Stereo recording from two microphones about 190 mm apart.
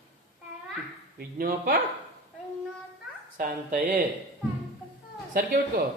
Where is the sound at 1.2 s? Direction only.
50° right (ahead or behind).